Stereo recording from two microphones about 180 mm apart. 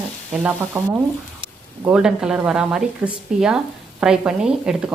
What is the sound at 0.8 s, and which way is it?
Sizzle, 15° right (ahead or behind).